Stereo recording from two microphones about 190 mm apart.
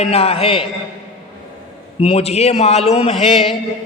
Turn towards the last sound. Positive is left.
turn(degrees=30)  # may be behind; listen again after turning